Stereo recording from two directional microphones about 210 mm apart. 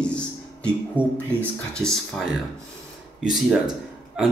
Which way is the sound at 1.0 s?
10° left (ahead or behind).